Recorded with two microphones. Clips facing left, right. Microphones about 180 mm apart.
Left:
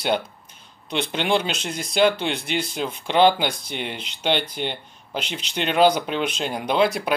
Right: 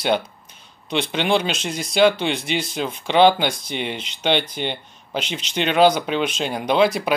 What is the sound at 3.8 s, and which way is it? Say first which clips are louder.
Speech: right 3 dB; 60° right (ahead or behind).